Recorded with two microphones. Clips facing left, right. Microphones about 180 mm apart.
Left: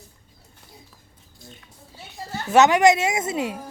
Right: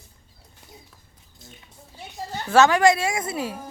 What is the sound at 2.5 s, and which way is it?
A woman's voice, 20° left (ahead or behind).